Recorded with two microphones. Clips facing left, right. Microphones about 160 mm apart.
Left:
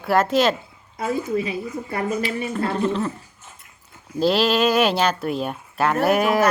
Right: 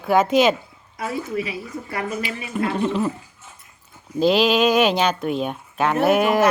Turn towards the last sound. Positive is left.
turn(degrees=0)  # may be behind; listen again after turning